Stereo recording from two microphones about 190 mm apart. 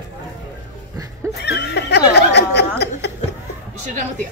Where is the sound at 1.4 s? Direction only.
60° left (ahead or behind).